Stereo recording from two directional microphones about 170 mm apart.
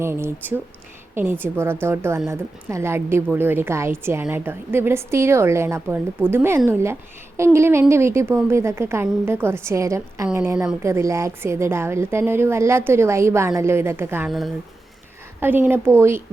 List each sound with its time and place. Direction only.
0.0 s a woman's voice: 15° right (ahead or behind)
14.3 s speech: centre (ahead or behind)
15.4 s a woman's voice: 10° right (ahead or behind)